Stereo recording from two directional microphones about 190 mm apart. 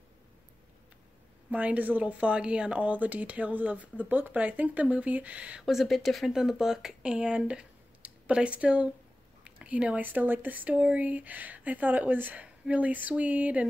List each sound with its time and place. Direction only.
1.5 s speech: 10° right (ahead or behind)